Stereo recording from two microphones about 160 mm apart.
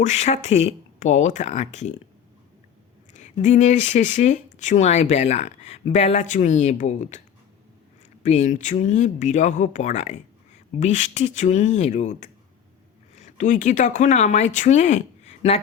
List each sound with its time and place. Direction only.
0.0 s speech: 45° left (ahead or behind)
3.1 s speech: 50° left (ahead or behind)
8.2 s speech: 50° left (ahead or behind)